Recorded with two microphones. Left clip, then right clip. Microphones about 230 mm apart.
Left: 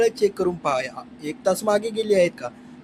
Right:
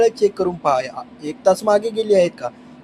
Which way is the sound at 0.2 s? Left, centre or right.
Centre.